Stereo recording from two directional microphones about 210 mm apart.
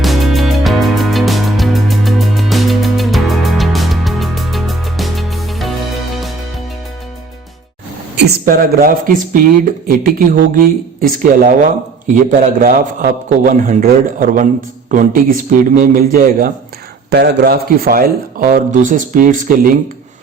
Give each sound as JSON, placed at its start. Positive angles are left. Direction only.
{"t": 0.0, "sound": "music", "side_deg": 0}
{"t": 8.1, "sound": "speech", "side_deg": -50}